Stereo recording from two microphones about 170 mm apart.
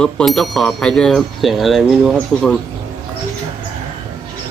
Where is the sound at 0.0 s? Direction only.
5° left (ahead or behind).